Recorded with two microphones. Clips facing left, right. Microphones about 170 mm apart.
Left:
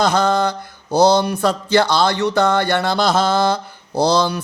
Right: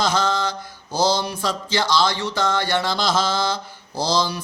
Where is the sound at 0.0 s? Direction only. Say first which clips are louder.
Left 5 dB; 60° left (ahead or behind).